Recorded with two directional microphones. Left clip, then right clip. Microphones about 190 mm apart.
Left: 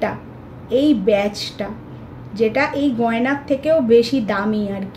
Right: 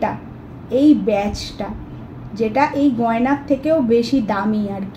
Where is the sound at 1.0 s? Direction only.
35° left (ahead or behind).